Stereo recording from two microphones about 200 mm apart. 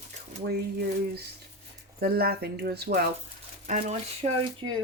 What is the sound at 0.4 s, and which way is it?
Speech, 50° right (ahead or behind).